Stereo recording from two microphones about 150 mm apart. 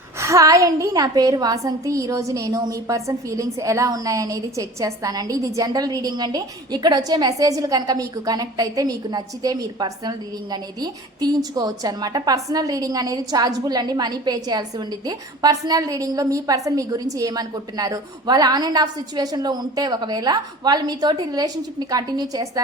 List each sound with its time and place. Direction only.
0.2 s a woman's voice: 20° right (ahead or behind)